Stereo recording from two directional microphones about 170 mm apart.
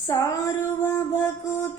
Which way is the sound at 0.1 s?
20° left (ahead or behind).